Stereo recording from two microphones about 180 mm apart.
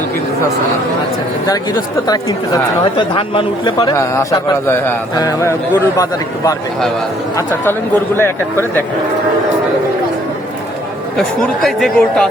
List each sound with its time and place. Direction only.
3.0 s a man's voice: 30° left (ahead or behind)
11.3 s speech: centre (ahead or behind)